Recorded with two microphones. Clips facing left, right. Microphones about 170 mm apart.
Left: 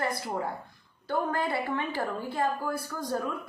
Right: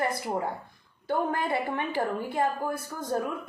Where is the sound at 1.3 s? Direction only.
20° right (ahead or behind).